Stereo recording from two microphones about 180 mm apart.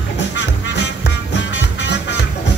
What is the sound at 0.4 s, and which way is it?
Music, 75° left (ahead or behind).